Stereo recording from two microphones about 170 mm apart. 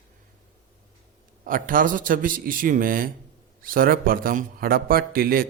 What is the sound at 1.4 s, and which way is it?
A man's voice, 55° right (ahead or behind).